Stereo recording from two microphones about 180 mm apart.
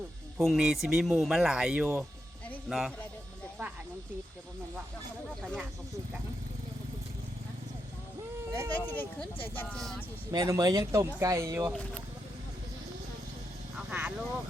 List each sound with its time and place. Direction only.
0.3 s speech: centre (ahead or behind)
8.4 s baby cry: 15° right (ahead or behind)
8.7 s speech: 10° left (ahead or behind)
10.3 s speech: 20° right (ahead or behind)
13.7 s a sound: 5° right (ahead or behind)